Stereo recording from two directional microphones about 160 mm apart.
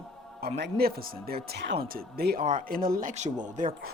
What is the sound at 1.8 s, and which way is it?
Speech, 75° right (ahead or behind).